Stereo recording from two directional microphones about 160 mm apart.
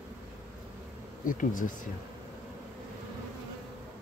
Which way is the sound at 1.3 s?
55° left (ahead or behind).